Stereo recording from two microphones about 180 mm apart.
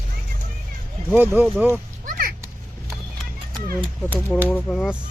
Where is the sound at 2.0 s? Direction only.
50° right (ahead or behind).